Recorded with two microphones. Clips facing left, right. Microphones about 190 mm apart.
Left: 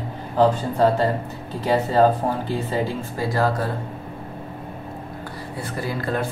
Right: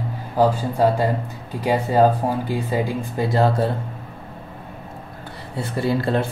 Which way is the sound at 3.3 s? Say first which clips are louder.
Right 3 dB; 25° right (ahead or behind).